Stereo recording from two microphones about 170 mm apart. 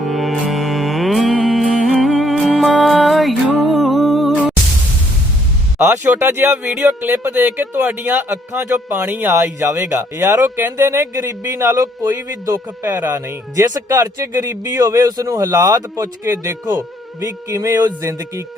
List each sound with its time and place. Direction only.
0.0 s music: centre (ahead or behind)
5.8 s speech: 10° right (ahead or behind)